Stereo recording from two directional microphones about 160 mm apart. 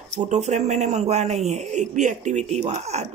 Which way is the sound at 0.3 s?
45° right (ahead or behind).